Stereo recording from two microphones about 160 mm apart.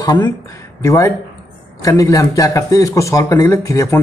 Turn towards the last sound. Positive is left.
turn(degrees=20)  # may be behind; listen again after turning